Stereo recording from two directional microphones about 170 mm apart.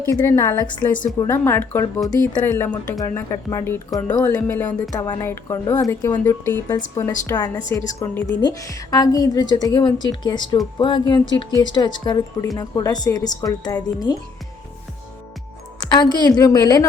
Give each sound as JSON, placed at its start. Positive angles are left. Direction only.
{"t": 0.1, "sound": "speech", "side_deg": 15}
{"t": 3.0, "sound": "speech", "side_deg": 20}
{"t": 15.8, "sound": "speech", "side_deg": 25}